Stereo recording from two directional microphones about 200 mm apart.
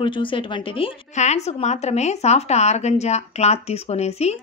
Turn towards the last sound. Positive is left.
turn(degrees=35)  # may be behind; listen again after turning